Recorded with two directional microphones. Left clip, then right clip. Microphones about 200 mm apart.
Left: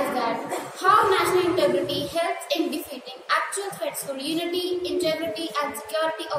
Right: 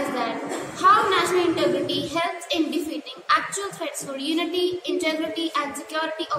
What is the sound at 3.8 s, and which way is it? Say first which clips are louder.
A woman's voice: even; 15° right (ahead or behind).